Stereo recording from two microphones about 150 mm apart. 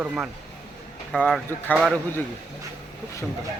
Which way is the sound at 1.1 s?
5° left (ahead or behind).